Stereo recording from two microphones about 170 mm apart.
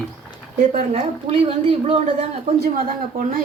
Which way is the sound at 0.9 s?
35° right (ahead or behind).